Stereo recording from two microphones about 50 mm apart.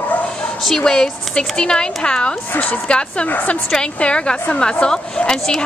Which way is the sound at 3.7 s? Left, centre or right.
Centre.